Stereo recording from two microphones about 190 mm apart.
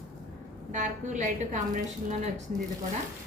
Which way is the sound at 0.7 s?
40° right (ahead or behind).